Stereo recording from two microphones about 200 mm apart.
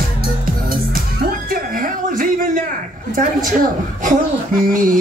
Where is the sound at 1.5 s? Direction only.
45° right (ahead or behind).